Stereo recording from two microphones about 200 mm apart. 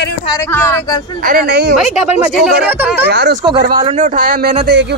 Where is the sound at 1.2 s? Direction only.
50° right (ahead or behind).